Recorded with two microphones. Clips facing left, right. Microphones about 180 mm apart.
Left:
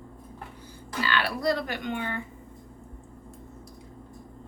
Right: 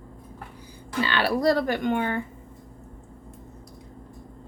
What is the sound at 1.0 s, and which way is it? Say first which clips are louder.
Speech: right 5 dB; 30° right (ahead or behind).